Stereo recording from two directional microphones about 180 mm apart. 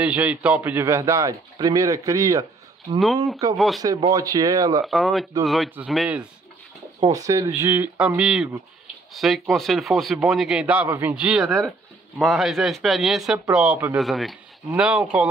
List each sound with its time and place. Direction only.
0.0 s a man's voice: 5° right (ahead or behind)
3.5 s speech: centre (ahead or behind)
3.8 s speech: 20° right (ahead or behind)
4.8 s speech: centre (ahead or behind)
7.0 s a man's voice: 20° right (ahead or behind)